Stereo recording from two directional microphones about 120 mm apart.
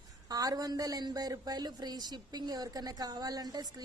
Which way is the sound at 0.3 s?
30° right (ahead or behind).